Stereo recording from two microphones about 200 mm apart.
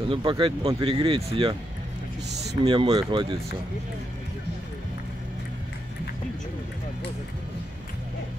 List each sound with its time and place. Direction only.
0.1 s speech: 25° right (ahead or behind)
2.6 s speech: 20° right (ahead or behind)